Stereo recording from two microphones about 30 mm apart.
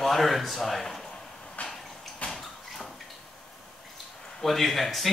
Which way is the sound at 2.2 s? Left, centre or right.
Left.